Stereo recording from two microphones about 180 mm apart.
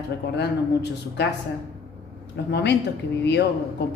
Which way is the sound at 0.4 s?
70° left (ahead or behind).